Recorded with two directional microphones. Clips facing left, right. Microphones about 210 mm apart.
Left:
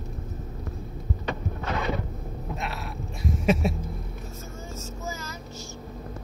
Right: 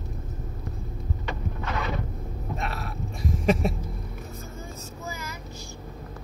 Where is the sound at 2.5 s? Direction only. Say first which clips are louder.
Right 1 dB; centre (ahead or behind).